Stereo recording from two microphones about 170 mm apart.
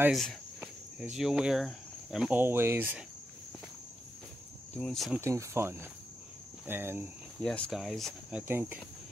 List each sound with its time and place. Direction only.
0.1 s speech: centre (ahead or behind)
4.7 s speech: 5° left (ahead or behind)
5.2 s speech: 15° right (ahead or behind)
6.6 s cricket: 15° right (ahead or behind)
7.4 s speech: 5° left (ahead or behind); by 8.8 s 10° right (ahead or behind)